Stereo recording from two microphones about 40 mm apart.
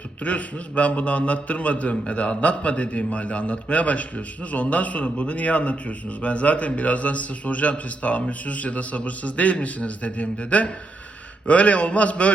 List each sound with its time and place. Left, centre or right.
0.3 s a man's voice: left